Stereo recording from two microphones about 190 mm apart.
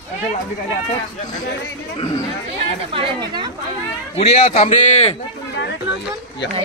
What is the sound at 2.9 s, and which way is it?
Speech, 25° right (ahead or behind).